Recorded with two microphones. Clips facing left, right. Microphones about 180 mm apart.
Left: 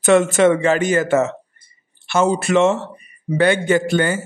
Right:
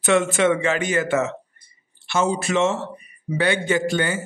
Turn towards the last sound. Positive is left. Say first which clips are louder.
# left 4 dB
turn(degrees=50)  # may be behind; listen again after turning